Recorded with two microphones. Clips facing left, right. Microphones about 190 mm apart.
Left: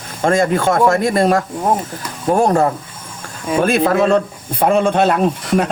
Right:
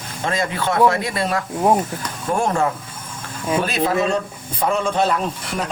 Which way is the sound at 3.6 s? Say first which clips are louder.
Left 8 dB; 55° left (ahead or behind).